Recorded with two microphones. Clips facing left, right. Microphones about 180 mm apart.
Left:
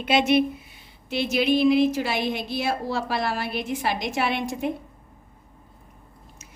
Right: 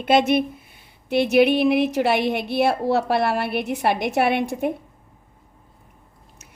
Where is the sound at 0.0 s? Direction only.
50° right (ahead or behind).